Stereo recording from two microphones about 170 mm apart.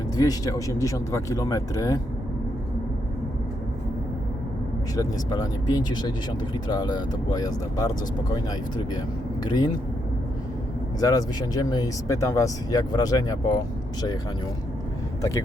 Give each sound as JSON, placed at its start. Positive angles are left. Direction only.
{"t": 0.2, "sound": "speech", "side_deg": 20}
{"t": 4.9, "sound": "speech", "side_deg": 20}
{"t": 9.4, "sound": "speech", "side_deg": 25}
{"t": 11.0, "sound": "speech", "side_deg": 20}